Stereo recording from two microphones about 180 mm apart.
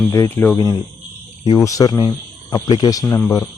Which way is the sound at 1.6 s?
20° left (ahead or behind).